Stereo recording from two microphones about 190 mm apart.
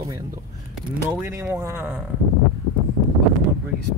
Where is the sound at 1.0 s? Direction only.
10° right (ahead or behind).